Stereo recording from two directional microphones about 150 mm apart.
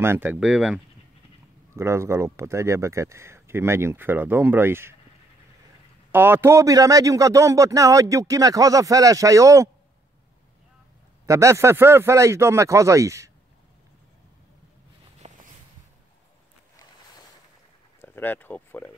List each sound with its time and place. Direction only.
0.0 s speech: 15° right (ahead or behind)
1.8 s speech: 20° right (ahead or behind)
6.1 s speech: 15° right (ahead or behind)
11.2 s speech: 20° right (ahead or behind)
15.2 s a sound: 50° right (ahead or behind)
18.0 s speech: 15° left (ahead or behind)